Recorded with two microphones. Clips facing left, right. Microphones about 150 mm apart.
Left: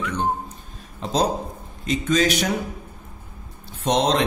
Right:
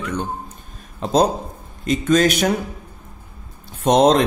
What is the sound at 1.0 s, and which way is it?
Speech, 50° right (ahead or behind).